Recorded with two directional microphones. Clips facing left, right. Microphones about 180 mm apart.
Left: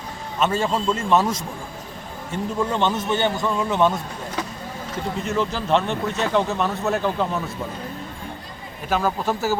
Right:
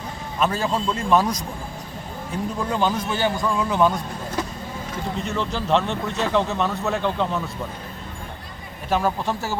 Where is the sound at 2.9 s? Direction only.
25° left (ahead or behind).